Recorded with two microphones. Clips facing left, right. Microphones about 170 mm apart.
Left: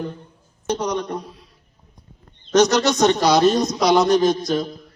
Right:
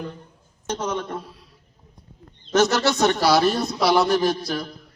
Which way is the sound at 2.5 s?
20° left (ahead or behind).